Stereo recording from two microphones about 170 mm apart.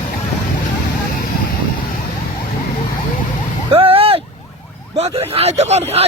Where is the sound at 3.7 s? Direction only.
35° right (ahead or behind).